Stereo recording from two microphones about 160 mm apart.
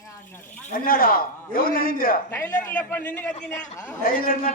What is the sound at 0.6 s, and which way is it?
A man's voice, 60° left (ahead or behind).